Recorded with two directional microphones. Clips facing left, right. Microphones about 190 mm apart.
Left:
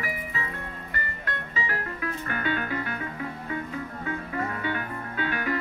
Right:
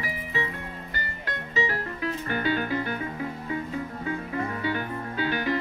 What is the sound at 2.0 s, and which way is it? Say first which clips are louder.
Music: right 6 dB; 30° right (ahead or behind).